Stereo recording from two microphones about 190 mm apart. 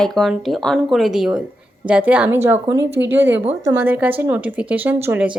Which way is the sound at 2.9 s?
65° right (ahead or behind).